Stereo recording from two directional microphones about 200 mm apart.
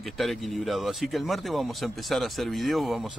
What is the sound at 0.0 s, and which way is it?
Speech, centre (ahead or behind).